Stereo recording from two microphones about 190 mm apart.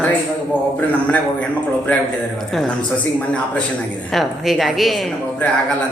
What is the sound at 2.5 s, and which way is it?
A woman's voice, centre (ahead or behind).